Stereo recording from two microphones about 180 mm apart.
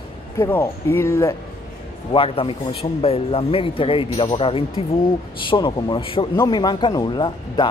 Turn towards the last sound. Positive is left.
turn(degrees=25)  # may be behind; listen again after turning